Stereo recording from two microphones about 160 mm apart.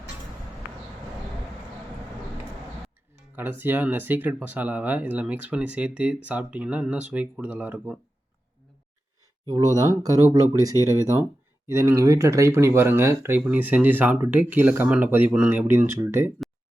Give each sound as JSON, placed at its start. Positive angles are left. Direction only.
{"t": 3.3, "sound": "speech", "side_deg": -10}
{"t": 9.5, "sound": "speech", "side_deg": -25}